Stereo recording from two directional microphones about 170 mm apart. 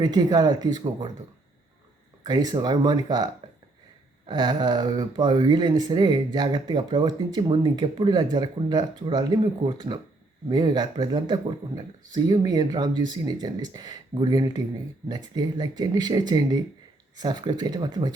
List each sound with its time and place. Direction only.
0.0 s speech: 25° right (ahead or behind)
2.2 s speech: 25° right (ahead or behind)
4.3 s speech: 25° right (ahead or behind)